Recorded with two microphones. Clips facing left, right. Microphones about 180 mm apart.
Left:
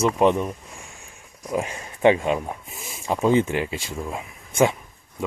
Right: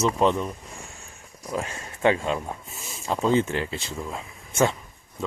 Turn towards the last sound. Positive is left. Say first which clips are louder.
# left 3 dB
turn(degrees=15)  # may be behind; listen again after turning